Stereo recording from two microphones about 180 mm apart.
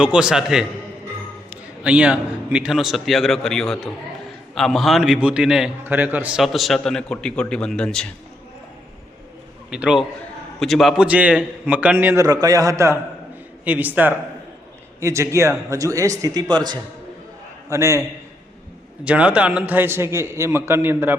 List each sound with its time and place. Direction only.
0.0 s a man's voice: 5° right (ahead or behind)
9.6 s a man's voice: 5° right (ahead or behind)
19.0 s a man's voice: 5° right (ahead or behind)